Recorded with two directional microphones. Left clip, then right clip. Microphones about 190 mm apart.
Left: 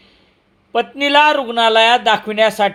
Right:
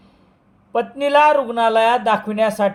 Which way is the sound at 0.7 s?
20° left (ahead or behind).